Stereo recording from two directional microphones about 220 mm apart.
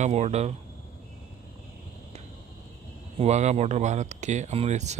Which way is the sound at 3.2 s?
30° right (ahead or behind).